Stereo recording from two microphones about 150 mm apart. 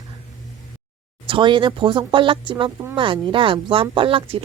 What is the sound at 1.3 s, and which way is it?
Speech, 35° right (ahead or behind).